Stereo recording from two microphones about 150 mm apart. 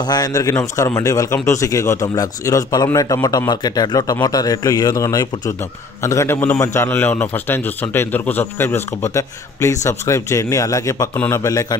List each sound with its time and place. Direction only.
0.0 s a man's voice: 25° left (ahead or behind)